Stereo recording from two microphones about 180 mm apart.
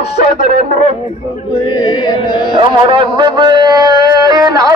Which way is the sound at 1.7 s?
25° left (ahead or behind).